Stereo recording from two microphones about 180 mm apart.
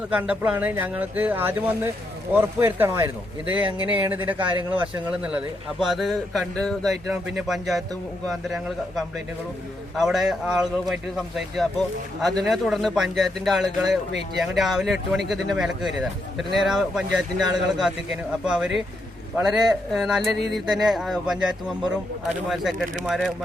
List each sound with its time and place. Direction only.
0.1 s speech: 5° right (ahead or behind)